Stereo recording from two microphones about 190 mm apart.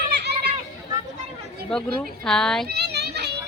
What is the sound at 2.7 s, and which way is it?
Children playing, 60° right (ahead or behind).